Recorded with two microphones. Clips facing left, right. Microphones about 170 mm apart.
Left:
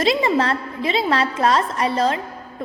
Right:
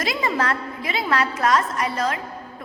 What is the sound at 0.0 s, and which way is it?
A woman's voice, 25° left (ahead or behind).